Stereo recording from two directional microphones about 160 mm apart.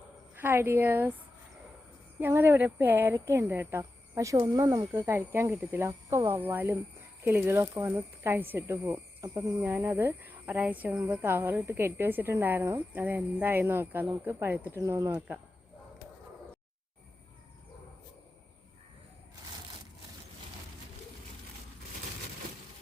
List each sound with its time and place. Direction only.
0.3 s speech: 15° right (ahead or behind)
2.2 s speech: 15° right (ahead or behind)